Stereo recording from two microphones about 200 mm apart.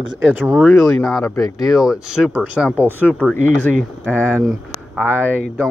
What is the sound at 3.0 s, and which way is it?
Speech, 5° left (ahead or behind).